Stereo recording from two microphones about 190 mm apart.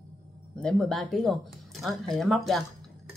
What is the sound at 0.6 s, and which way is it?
Speech, 5° left (ahead or behind).